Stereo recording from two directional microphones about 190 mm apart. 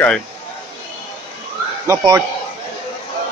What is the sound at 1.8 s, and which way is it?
Speech, 15° right (ahead or behind).